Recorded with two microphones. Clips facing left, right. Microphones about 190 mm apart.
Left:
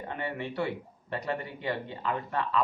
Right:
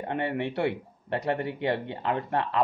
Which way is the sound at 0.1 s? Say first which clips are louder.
Right 6 dB; 65° right (ahead or behind).